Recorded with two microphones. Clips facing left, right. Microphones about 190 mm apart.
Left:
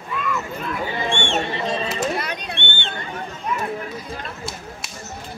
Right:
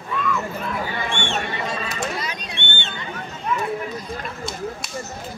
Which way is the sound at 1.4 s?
25° left (ahead or behind).